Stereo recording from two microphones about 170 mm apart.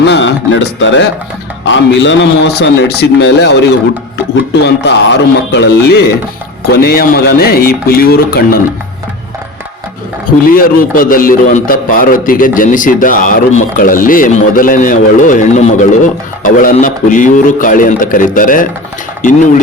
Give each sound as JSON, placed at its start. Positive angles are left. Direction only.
{"t": 0.0, "sound": "music", "side_deg": 90}
{"t": 1.6, "sound": "a man's voice", "side_deg": 90}
{"t": 4.6, "sound": "a man's voice", "side_deg": 90}
{"t": 6.7, "sound": "speech", "side_deg": 65}
{"t": 10.4, "sound": "a man's voice", "side_deg": 55}